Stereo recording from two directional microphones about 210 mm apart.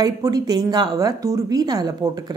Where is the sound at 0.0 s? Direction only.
20° right (ahead or behind).